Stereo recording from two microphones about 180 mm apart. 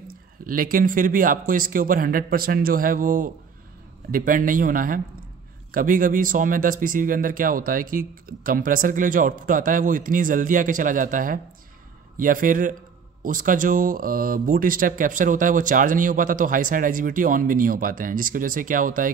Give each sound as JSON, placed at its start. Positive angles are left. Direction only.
{"t": 0.1, "sound": "speech", "side_deg": -50}